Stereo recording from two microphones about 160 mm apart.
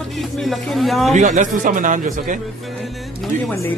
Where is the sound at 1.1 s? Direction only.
50° right (ahead or behind).